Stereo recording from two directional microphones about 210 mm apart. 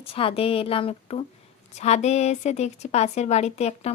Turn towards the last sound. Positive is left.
turn(degrees=30)  # may be behind; listen again after turning